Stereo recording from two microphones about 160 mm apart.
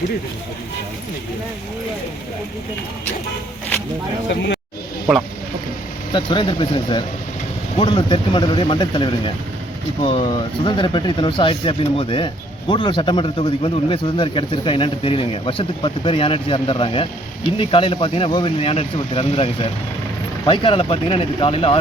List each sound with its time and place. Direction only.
4.3 s speech: 90° left
6.1 s speech: 30° left (ahead or behind)